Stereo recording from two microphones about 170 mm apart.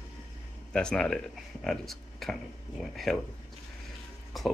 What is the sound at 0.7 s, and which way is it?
Speech, 5° left (ahead or behind).